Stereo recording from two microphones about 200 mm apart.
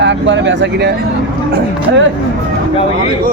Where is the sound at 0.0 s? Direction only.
65° right (ahead or behind).